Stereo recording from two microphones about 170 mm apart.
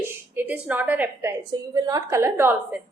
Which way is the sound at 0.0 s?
10° right (ahead or behind).